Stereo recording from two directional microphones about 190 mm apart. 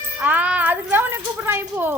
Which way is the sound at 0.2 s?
10° right (ahead or behind).